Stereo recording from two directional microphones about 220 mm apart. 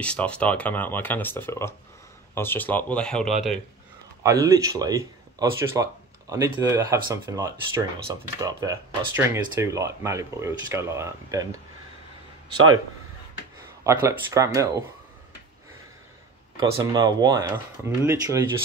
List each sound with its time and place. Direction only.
0.0 s speech: 5° left (ahead or behind)
4.2 s speech: 15° right (ahead or behind)
12.5 s speech: 20° right (ahead or behind)
13.8 s speech: 15° right (ahead or behind)
16.5 s speech: 15° right (ahead or behind)